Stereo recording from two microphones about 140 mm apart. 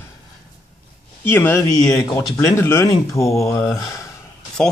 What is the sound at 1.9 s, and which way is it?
Speech, 25° left (ahead or behind).